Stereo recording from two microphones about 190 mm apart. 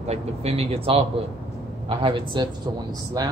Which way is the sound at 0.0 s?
35° right (ahead or behind).